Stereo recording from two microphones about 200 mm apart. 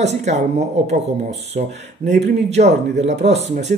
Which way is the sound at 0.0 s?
35° right (ahead or behind).